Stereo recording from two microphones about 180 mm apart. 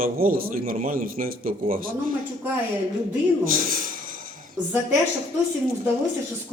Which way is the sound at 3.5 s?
50° right (ahead or behind).